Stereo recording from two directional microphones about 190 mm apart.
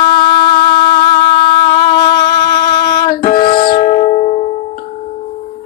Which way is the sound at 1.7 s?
25° left (ahead or behind).